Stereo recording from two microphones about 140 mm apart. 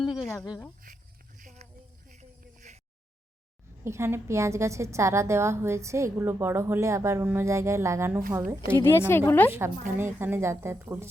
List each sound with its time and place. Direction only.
0.1 s a sound: centre (ahead or behind)
0.9 s speech: 80° right
1.4 s a sound: 70° right (ahead or behind)
2.0 s snake: 60° right (ahead or behind)
3.8 s a woman's voice: 20° right (ahead or behind)
8.8 s a woman's voice: 15° left (ahead or behind)
9.5 s a woman's voice: 15° right (ahead or behind)